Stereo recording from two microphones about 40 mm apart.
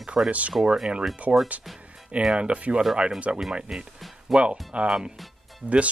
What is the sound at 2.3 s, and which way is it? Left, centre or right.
Speech, right.